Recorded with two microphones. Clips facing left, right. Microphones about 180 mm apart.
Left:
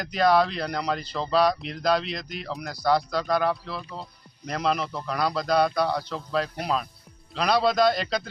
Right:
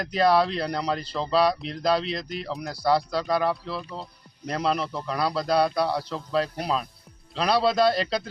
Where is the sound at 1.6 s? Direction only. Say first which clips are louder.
Even; 30° right (ahead or behind).